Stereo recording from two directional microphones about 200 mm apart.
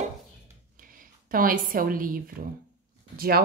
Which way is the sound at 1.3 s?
45° right (ahead or behind).